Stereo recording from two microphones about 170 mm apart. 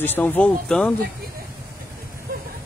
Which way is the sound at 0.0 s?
10° left (ahead or behind).